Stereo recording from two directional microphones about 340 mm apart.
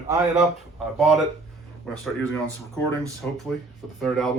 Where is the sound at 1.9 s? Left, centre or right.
Centre.